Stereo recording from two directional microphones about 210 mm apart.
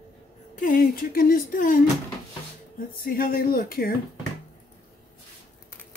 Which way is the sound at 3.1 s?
45° left (ahead or behind).